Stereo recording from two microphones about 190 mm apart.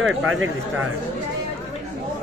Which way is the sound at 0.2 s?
90° right.